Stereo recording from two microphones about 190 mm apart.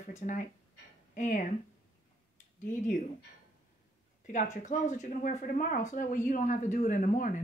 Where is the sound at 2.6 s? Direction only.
40° left (ahead or behind).